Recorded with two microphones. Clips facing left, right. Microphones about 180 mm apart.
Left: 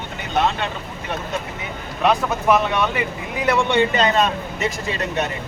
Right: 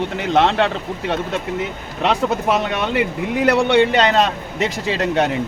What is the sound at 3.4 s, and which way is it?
A man's voice, 75° right (ahead or behind).